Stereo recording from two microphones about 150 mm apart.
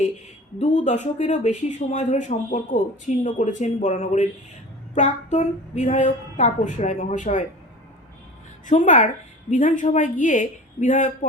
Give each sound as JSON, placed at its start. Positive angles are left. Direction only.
{"t": 0.6, "sound": "a woman's voice", "side_deg": 50}
{"t": 8.6, "sound": "a woman's voice", "side_deg": 55}